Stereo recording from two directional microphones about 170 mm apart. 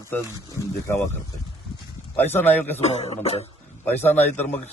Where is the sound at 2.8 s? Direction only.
40° left (ahead or behind).